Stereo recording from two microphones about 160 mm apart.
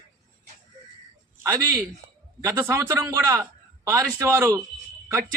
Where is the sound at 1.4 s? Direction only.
20° right (ahead or behind).